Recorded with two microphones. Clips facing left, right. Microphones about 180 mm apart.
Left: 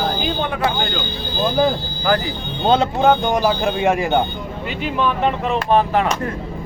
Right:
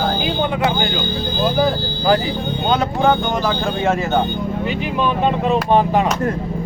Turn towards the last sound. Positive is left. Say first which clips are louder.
# right 1 dB
turn(degrees=-15)  # may be behind; listen again after turning